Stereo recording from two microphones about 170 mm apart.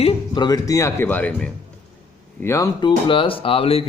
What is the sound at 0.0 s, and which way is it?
Speech, 30° left (ahead or behind).